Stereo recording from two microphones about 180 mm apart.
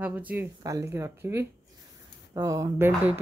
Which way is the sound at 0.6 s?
20° right (ahead or behind).